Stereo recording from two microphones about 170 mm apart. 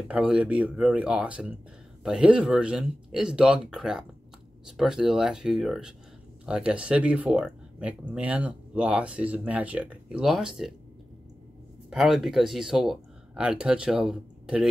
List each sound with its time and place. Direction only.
0.1 s speech: 5° right (ahead or behind)
11.9 s speech: centre (ahead or behind)